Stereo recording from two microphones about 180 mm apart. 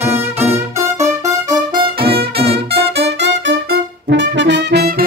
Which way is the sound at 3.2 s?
75° right (ahead or behind).